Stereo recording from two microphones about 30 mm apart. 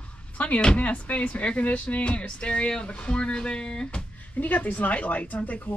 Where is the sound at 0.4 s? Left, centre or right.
Left.